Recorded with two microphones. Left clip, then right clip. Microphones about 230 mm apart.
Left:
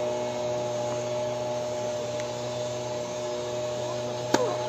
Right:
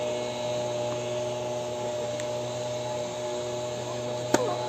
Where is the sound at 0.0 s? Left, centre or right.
Right.